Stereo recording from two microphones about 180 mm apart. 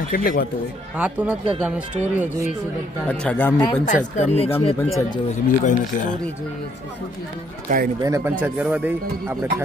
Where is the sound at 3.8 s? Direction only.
40° left (ahead or behind).